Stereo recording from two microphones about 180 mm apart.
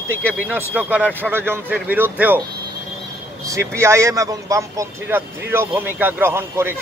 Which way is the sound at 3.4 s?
15° right (ahead or behind).